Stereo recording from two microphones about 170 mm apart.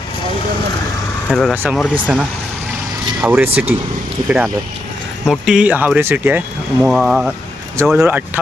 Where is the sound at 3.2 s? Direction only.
10° right (ahead or behind).